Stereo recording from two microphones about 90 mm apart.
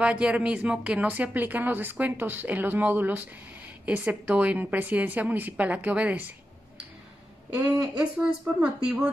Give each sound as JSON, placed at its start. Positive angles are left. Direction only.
{"t": 0.0, "sound": "a woman's voice", "side_deg": -10}
{"t": 7.7, "sound": "speech", "side_deg": -45}
{"t": 8.6, "sound": "a woman's voice", "side_deg": -10}